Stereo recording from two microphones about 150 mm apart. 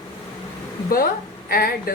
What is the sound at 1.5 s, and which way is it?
Speech, 90° left.